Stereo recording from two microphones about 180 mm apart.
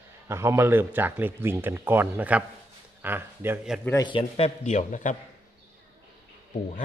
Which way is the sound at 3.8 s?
20° left (ahead or behind).